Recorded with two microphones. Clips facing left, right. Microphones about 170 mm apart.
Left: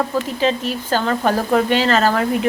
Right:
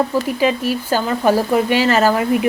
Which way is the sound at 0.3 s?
10° right (ahead or behind).